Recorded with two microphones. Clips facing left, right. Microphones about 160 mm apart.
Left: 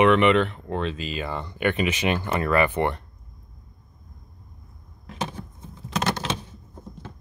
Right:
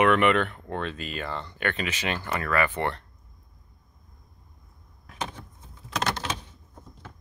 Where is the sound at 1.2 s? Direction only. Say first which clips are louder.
Left 6 dB; 15° left (ahead or behind).